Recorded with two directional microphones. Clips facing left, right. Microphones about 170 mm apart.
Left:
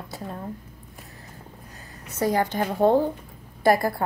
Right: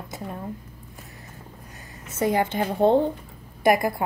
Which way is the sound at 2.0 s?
25° right (ahead or behind).